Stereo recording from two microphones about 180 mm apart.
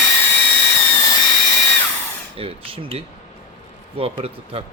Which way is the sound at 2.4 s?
30° right (ahead or behind).